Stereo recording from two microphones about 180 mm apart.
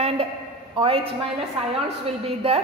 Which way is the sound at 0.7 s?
30° right (ahead or behind).